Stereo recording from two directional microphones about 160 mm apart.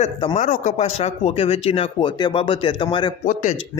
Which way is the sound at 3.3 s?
55° left (ahead or behind).